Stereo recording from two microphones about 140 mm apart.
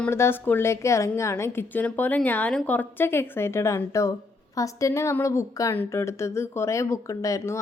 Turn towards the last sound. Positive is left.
turn(degrees=20)  # may be behind; listen again after turning